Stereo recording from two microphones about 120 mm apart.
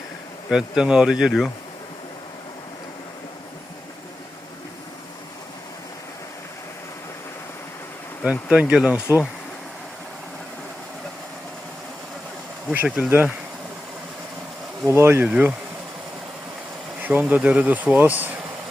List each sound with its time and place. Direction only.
0.5 s speech: centre (ahead or behind)
8.2 s speech: 5° right (ahead or behind)
12.7 s speech: 15° right (ahead or behind)
14.8 s speech: 20° right (ahead or behind)
17.0 s speech: 15° right (ahead or behind)